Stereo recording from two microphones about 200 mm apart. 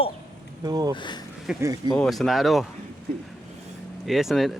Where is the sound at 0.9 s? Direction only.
20° left (ahead or behind).